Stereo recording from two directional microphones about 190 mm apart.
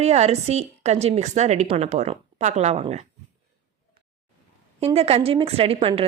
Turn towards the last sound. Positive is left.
turn(degrees=-30)  # may be behind; listen again after turning